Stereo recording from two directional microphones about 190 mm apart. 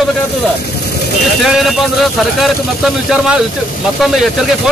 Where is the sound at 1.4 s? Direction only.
Centre (ahead or behind).